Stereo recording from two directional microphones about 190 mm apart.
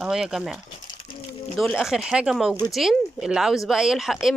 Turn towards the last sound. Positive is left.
turn(degrees=0)  # may be behind; listen again after turning